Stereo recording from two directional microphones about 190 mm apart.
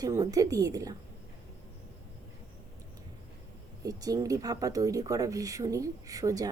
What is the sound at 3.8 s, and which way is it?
Speech, 20° right (ahead or behind).